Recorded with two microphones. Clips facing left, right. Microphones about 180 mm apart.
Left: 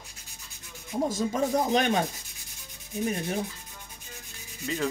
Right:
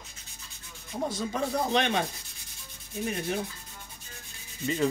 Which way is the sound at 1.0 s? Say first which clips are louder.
Left 3 dB; 45° left (ahead or behind).